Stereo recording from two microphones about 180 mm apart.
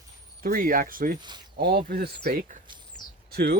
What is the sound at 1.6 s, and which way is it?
Speech, 55° right (ahead or behind).